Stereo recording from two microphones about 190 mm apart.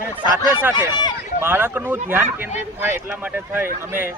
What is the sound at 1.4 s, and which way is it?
Speech, 10° right (ahead or behind).